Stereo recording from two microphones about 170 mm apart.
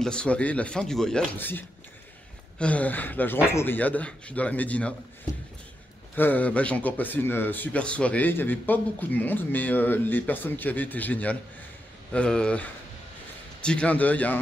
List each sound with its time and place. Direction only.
0.0 s speech: 5° left (ahead or behind)
2.6 s a man's voice: 10° left (ahead or behind)
6.1 s a man's voice: 10° left (ahead or behind)